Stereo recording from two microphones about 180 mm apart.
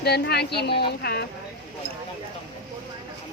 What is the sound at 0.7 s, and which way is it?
Speech, 30° left (ahead or behind).